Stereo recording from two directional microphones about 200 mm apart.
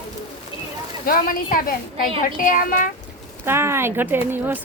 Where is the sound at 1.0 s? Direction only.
45° left (ahead or behind).